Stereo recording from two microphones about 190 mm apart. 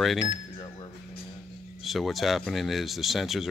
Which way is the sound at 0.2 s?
20° left (ahead or behind).